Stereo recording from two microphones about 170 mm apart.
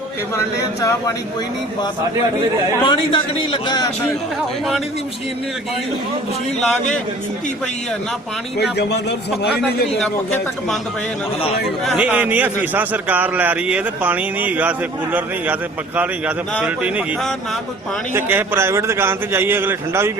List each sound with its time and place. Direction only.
0.3 s a man's voice: 20° left (ahead or behind)
2.8 s a man's voice: 30° left (ahead or behind)
8.8 s a man's voice: 90° left
9.4 s a man's voice: 75° left (ahead or behind)
11.9 s a man's voice: 10° right (ahead or behind)
16.6 s a man's voice: 5° right (ahead or behind)